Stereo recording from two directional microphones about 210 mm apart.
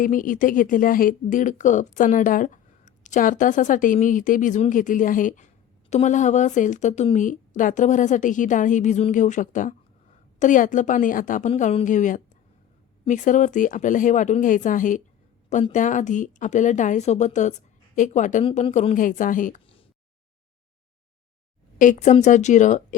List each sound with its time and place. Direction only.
0.0 s speech: 40° left (ahead or behind)
21.8 s speech: 35° left (ahead or behind)